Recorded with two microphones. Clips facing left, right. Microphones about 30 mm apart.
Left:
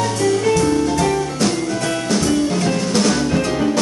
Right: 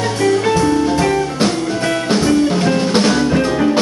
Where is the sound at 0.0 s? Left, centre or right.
Right.